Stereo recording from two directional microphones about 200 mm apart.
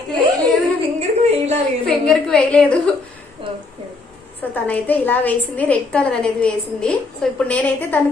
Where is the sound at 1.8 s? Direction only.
5° left (ahead or behind).